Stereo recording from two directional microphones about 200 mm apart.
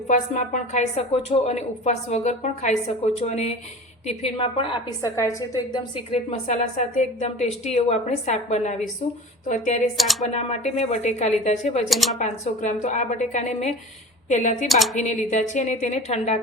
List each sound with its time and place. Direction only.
0.1 s a woman's voice: 40° left (ahead or behind)
10.0 s speech: centre (ahead or behind)
10.3 s speech: 35° left (ahead or behind)
11.9 s speech: centre (ahead or behind)
12.2 s speech: 35° left (ahead or behind)